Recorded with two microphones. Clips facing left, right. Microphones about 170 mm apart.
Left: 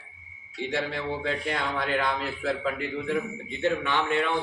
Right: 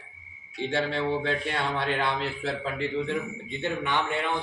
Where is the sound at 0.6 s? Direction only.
30° right (ahead or behind).